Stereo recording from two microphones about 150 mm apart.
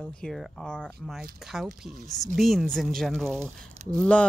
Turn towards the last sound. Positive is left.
turn(degrees=10)  # may be behind; listen again after turning